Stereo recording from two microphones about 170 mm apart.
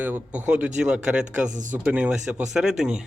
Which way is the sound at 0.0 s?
10° right (ahead or behind).